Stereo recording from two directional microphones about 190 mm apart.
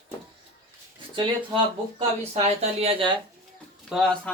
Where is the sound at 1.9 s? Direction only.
35° right (ahead or behind).